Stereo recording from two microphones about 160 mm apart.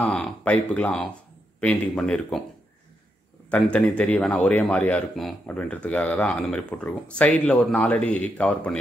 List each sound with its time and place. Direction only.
0.0 s speech: 5° left (ahead or behind)
3.4 s a man's voice: 5° left (ahead or behind)